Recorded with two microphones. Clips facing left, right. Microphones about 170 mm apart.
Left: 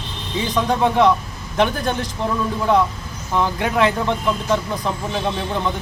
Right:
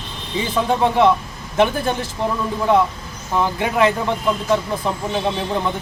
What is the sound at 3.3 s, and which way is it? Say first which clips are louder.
Speech: even; centre (ahead or behind).